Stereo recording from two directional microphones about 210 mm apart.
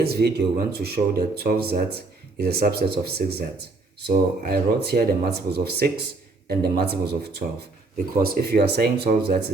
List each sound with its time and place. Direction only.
0.0 s speech: 50° right (ahead or behind)
7.9 s speech: 45° right (ahead or behind)